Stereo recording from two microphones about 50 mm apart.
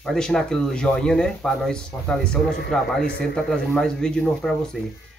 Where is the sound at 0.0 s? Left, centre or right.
Centre.